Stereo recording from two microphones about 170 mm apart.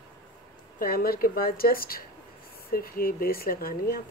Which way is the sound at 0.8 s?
60° left (ahead or behind).